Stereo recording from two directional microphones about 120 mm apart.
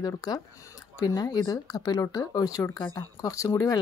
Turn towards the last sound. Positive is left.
turn(degrees=30)  # may be behind; listen again after turning